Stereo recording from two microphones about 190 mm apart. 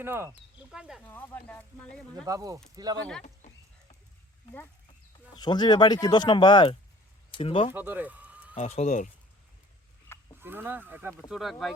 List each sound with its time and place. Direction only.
0.0 s speech: 10° right (ahead or behind)
0.7 s speech: centre (ahead or behind)
1.0 s speech: 10° left (ahead or behind)
2.2 s speech: 20° right (ahead or behind)
3.2 s a sound: 40° left (ahead or behind)
5.4 s speech: 20° left (ahead or behind)
7.7 s a sound: 10° right (ahead or behind)
8.5 s speech: 35° left (ahead or behind)
10.1 s livestock: 10° left (ahead or behind)
10.4 s speech: 10° right (ahead or behind)